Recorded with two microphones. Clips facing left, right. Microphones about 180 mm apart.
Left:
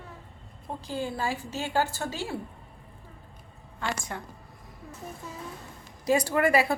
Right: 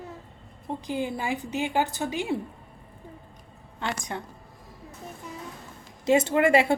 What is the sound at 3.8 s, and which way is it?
Speech, 20° right (ahead or behind).